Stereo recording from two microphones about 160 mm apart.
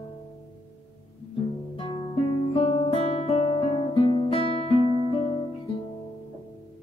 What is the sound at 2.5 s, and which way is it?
Guitar, 40° left (ahead or behind).